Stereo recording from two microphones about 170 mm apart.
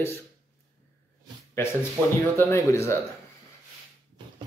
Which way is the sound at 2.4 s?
15° left (ahead or behind).